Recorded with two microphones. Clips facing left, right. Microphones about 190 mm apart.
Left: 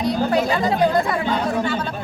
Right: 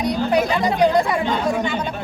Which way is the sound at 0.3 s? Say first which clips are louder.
Right 1 dB; 20° right (ahead or behind).